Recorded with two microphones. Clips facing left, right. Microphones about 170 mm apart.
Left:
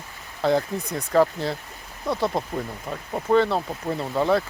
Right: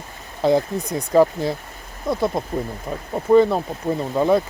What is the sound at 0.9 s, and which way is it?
Speech, 15° right (ahead or behind).